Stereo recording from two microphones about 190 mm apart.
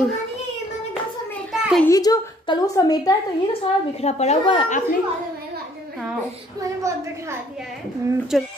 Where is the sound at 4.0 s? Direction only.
35° left (ahead or behind).